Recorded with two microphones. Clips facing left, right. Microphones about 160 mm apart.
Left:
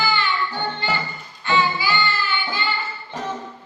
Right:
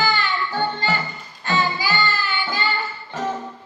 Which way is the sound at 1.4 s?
40° right (ahead or behind).